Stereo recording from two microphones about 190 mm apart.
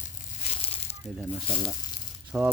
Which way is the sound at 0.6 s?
30° left (ahead or behind).